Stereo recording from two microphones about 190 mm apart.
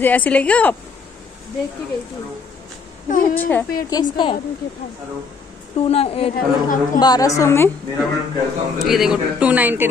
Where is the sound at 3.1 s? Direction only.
45° left (ahead or behind).